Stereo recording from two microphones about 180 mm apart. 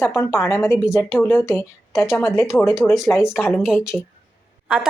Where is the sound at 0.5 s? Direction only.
15° left (ahead or behind).